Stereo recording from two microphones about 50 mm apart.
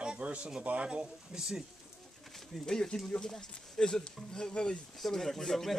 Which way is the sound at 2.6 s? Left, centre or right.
Centre.